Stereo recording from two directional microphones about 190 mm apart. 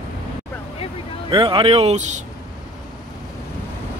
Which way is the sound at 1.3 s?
25° right (ahead or behind).